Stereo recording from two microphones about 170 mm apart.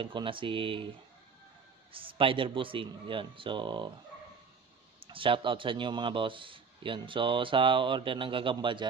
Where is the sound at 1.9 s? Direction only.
30° right (ahead or behind).